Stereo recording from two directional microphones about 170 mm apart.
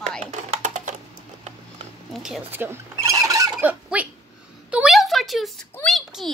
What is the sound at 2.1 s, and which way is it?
Fowl, 5° right (ahead or behind).